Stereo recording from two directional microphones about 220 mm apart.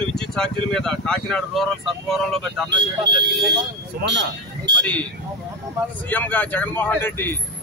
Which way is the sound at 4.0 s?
50° right (ahead or behind).